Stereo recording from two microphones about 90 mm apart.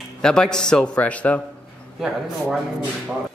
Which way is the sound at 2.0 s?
5° right (ahead or behind).